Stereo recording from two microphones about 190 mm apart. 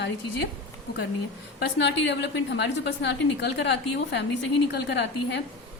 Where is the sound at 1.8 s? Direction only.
65° left (ahead or behind).